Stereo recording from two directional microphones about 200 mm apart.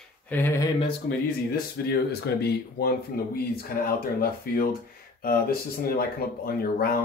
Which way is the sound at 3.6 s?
50° left (ahead or behind).